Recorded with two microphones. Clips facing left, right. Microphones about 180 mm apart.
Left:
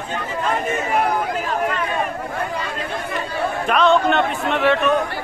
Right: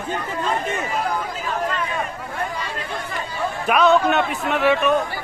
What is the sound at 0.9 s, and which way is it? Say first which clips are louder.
Chatter: left 5 dB; 60° left (ahead or behind).